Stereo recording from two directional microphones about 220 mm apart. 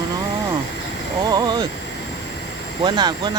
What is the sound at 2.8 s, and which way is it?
Speech, 20° right (ahead or behind).